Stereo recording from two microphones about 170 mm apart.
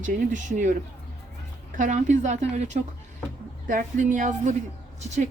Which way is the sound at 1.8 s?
45° right (ahead or behind).